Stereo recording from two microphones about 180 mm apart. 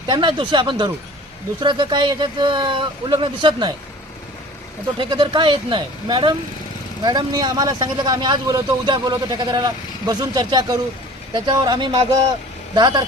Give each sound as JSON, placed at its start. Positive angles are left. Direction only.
{"t": 0.1, "sound": "speech", "side_deg": -25}
{"t": 4.9, "sound": "speech", "side_deg": -25}